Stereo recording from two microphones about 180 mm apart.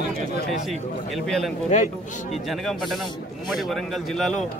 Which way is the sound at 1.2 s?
5° left (ahead or behind).